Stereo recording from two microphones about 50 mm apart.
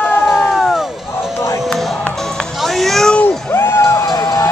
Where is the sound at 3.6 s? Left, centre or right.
Left.